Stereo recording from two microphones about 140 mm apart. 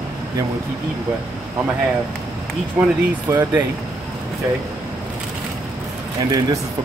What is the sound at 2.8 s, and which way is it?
Speech, 15° right (ahead or behind).